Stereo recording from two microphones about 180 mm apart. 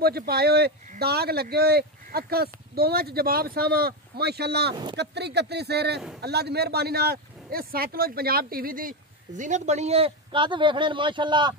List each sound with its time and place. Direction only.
0.0 s speech: 60° right (ahead or behind)
9.4 s a man's voice: 40° right (ahead or behind); by 11.5 s 25° right (ahead or behind)